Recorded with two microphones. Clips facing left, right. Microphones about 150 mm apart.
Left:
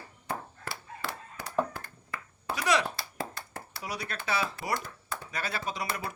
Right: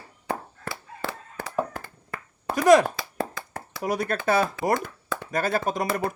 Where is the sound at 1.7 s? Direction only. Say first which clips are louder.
Right 4 dB; 55° right (ahead or behind).